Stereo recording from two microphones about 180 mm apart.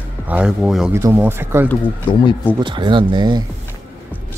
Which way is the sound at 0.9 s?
15° right (ahead or behind).